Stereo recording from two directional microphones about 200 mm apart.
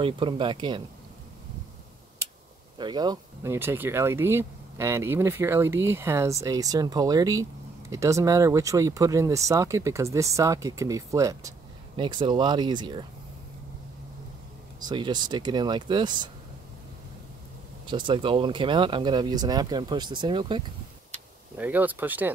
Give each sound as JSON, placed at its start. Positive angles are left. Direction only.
{"t": 0.0, "sound": "speech", "side_deg": -25}
{"t": 2.8, "sound": "speech", "side_deg": -20}
{"t": 14.9, "sound": "speech", "side_deg": -20}
{"t": 17.8, "sound": "speech", "side_deg": -25}
{"t": 21.5, "sound": "speech", "side_deg": -10}